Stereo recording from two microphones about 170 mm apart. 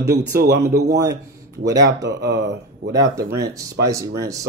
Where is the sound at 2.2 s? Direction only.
80° right.